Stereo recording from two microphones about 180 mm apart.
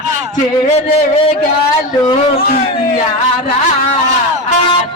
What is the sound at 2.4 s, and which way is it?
Music, 55° left (ahead or behind).